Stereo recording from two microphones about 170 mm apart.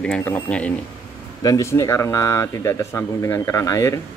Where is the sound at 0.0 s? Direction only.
10° left (ahead or behind).